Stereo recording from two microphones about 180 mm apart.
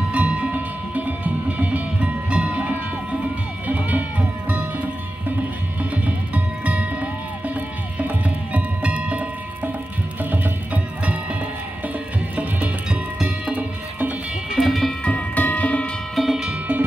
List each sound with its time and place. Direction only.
0.1 s music: 10° right (ahead or behind)
5.8 s music: 10° right (ahead or behind)
8.5 s music: 5° right (ahead or behind)
10.3 s music: 10° right (ahead or behind)
13.2 s music: 10° right (ahead or behind)